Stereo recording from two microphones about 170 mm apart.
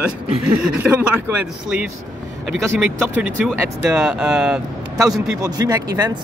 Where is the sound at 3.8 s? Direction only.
5° right (ahead or behind).